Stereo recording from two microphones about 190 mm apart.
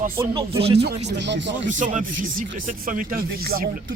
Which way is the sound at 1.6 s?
40° right (ahead or behind).